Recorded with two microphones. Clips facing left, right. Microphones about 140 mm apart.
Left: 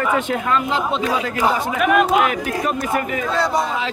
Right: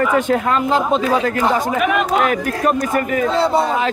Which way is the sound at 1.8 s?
Centre (ahead or behind).